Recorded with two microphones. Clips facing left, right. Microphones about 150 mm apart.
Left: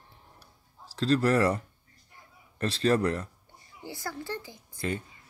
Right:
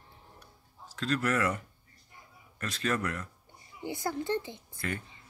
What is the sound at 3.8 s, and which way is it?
Speech, 20° right (ahead or behind).